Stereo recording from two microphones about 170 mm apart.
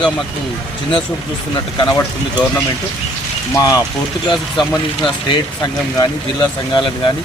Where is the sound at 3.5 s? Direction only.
20° left (ahead or behind).